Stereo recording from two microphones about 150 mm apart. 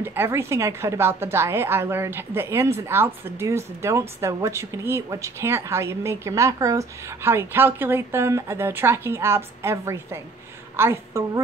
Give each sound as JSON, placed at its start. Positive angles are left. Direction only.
{"t": 0.0, "sound": "speech", "side_deg": -15}